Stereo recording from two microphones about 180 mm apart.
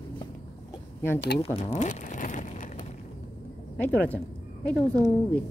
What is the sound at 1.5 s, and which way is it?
Crumpling, 40° left (ahead or behind).